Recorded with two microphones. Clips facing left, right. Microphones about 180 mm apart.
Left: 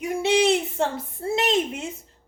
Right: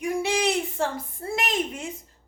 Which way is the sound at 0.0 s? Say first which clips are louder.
Left 4 dB; 25° left (ahead or behind).